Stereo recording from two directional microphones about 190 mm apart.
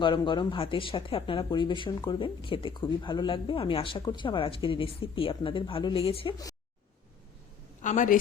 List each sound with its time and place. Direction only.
0.0 s speech: 25° left (ahead or behind)
7.8 s a woman's voice: 40° left (ahead or behind)